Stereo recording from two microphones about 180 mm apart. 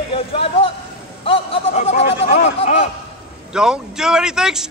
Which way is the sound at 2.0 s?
65° left (ahead or behind).